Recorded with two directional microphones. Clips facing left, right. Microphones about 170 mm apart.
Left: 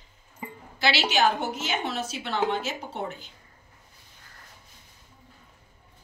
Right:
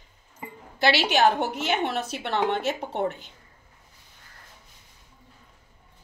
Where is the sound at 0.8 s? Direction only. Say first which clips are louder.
Right 3 dB; 55° right (ahead or behind).